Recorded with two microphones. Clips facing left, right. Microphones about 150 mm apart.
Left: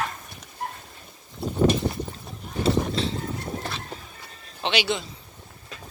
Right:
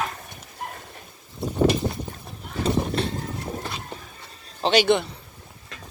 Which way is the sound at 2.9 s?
55° right (ahead or behind).